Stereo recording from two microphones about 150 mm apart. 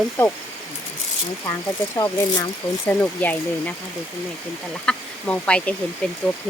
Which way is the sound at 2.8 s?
10° left (ahead or behind).